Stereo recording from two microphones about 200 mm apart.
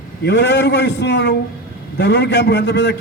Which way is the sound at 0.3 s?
60° left (ahead or behind).